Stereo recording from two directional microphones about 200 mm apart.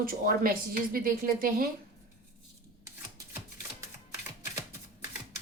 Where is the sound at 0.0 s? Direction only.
45° right (ahead or behind).